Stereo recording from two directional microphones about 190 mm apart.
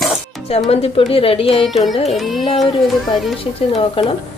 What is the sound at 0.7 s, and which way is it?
Speech, 30° left (ahead or behind).